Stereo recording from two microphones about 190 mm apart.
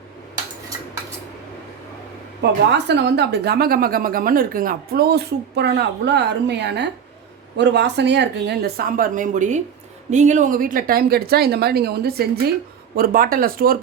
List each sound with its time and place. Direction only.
2.4 s a woman's voice: 65° right (ahead or behind)